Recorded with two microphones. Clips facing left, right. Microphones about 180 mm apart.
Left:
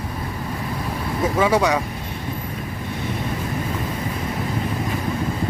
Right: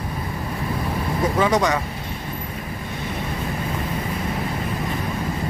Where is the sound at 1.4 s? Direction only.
10° left (ahead or behind).